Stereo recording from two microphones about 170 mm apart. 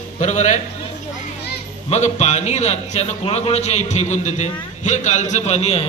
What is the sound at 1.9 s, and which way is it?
A man's voice, 40° left (ahead or behind).